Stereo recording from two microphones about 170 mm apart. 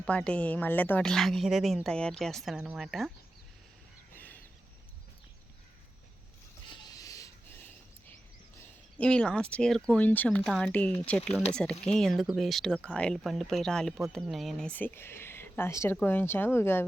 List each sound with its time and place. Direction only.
0.0 s speech: 5° left (ahead or behind)
6.9 s a sound: 20° left (ahead or behind)
9.0 s speech: 5° left (ahead or behind)